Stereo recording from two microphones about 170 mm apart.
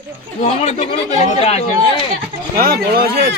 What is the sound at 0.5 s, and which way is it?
Speech, 40° left (ahead or behind).